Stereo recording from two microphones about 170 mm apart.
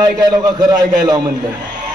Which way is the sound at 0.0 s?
25° right (ahead or behind).